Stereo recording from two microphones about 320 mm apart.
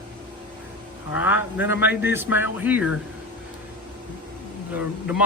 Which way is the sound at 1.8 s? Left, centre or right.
Centre.